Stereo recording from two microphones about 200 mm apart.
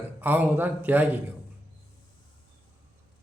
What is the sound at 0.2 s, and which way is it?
Speech, 10° right (ahead or behind).